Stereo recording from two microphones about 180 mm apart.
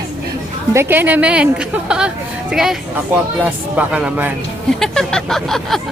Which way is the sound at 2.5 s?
Centre (ahead or behind).